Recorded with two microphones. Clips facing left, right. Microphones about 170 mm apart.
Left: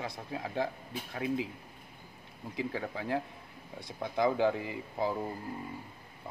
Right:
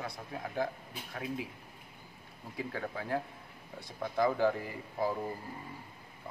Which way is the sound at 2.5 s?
25° left (ahead or behind).